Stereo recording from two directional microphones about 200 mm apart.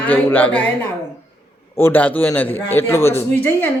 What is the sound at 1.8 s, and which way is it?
Speech, 10° left (ahead or behind).